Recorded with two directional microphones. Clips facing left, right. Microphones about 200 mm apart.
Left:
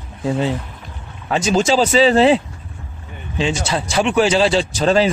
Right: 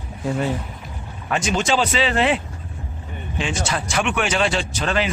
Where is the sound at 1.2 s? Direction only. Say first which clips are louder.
Left 5 dB; 35° left (ahead or behind).